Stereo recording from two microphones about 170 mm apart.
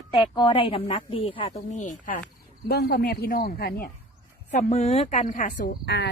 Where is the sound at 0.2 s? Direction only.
25° left (ahead or behind); by 2.2 s 50° left (ahead or behind).